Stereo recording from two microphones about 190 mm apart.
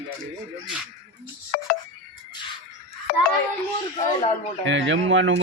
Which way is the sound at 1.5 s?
45° left (ahead or behind).